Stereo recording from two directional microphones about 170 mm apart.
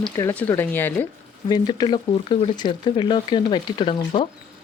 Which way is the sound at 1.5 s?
25° left (ahead or behind).